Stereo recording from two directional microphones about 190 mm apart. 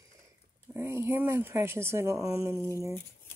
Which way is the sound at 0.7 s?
10° right (ahead or behind).